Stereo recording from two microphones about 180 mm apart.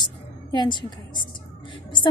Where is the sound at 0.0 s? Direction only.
25° left (ahead or behind).